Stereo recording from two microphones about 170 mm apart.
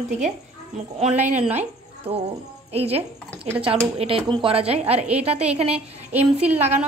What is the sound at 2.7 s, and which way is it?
A woman's voice, 35° right (ahead or behind).